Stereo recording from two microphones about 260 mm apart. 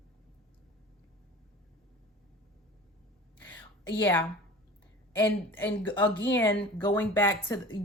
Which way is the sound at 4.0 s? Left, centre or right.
Centre.